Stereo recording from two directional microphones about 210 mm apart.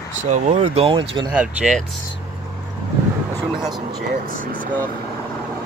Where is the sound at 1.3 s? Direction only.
5° right (ahead or behind).